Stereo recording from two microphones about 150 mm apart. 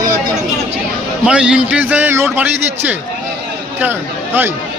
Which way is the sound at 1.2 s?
5° right (ahead or behind).